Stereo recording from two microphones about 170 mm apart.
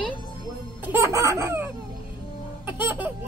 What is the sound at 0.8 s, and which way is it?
Baby laughter, 15° right (ahead or behind).